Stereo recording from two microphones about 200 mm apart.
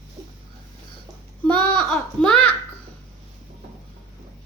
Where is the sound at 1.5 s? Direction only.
5° left (ahead or behind).